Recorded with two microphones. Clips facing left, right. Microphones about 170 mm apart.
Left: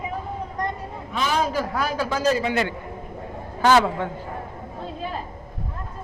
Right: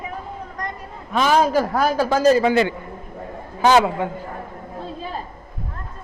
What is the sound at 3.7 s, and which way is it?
Speech, 15° right (ahead or behind).